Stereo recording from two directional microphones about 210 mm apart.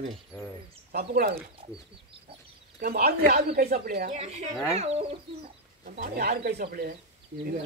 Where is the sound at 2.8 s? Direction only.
45° right (ahead or behind).